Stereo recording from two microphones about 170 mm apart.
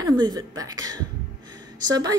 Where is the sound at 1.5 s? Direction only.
20° right (ahead or behind).